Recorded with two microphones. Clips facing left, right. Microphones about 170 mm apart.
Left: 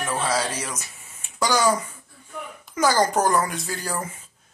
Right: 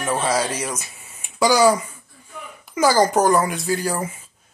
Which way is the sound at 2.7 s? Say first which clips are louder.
Right 4 dB; 5° right (ahead or behind).